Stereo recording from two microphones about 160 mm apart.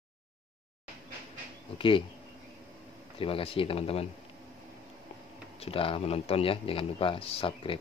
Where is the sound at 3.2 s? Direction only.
35° left (ahead or behind).